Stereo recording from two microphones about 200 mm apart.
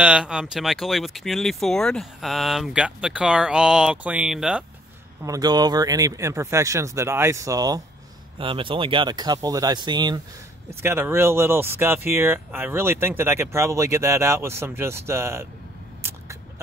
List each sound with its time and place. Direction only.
0.0 s speech: 5° right (ahead or behind)
5.2 s speech: 20° right (ahead or behind)
16.0 s a sound: 10° right (ahead or behind)